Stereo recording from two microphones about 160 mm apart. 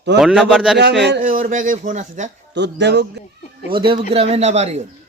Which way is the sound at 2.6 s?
90° right.